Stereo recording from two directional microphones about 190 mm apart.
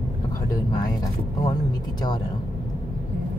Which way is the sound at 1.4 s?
20° left (ahead or behind).